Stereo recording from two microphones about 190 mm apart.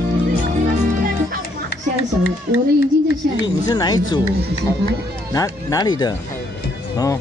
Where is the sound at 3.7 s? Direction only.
20° left (ahead or behind).